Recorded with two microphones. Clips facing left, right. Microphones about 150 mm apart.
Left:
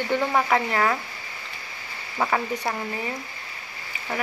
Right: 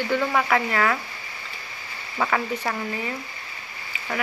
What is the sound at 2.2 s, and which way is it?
Speech, 15° left (ahead or behind).